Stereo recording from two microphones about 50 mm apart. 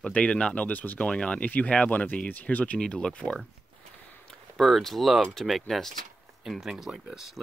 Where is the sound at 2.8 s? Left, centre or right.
Centre.